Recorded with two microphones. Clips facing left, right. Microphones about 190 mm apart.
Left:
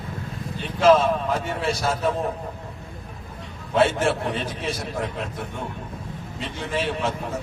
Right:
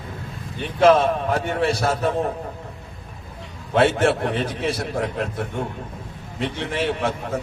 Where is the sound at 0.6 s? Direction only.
60° right (ahead or behind).